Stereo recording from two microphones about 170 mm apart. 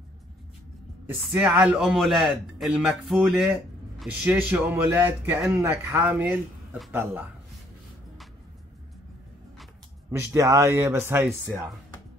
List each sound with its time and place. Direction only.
1.3 s a man's voice: 10° right (ahead or behind)
10.1 s speech: 15° right (ahead or behind)